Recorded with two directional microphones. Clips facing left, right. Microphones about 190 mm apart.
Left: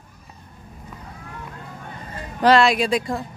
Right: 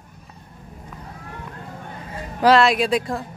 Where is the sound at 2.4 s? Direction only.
Centre (ahead or behind).